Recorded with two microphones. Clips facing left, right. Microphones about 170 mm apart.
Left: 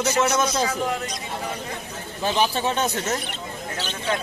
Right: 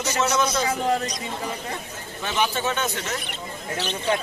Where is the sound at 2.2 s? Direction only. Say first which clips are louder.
Left 3 dB; 30° left (ahead or behind).